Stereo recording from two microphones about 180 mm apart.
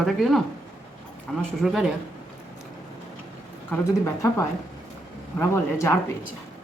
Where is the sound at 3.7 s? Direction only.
15° left (ahead or behind).